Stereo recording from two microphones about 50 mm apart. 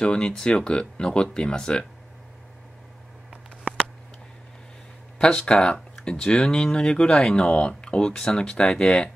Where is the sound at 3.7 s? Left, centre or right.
Right.